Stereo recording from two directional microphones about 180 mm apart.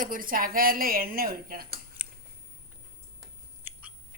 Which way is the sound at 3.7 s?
10° right (ahead or behind).